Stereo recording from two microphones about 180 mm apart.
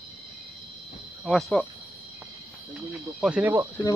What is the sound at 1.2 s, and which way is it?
Speech, centre (ahead or behind).